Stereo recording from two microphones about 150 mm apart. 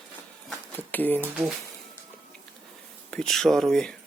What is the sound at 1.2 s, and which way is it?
Speech, 10° right (ahead or behind).